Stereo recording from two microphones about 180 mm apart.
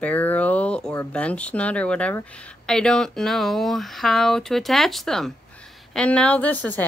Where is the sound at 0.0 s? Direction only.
10° left (ahead or behind).